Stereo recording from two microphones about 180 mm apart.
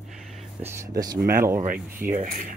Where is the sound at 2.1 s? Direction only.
50° right (ahead or behind).